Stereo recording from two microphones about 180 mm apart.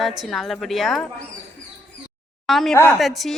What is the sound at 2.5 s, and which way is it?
Speech, centre (ahead or behind).